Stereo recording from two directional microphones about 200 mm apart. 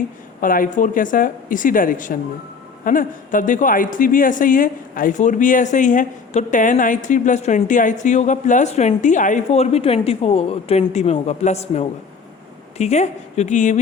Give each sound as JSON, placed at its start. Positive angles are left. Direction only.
{"t": 0.4, "sound": "a man's voice", "side_deg": 45}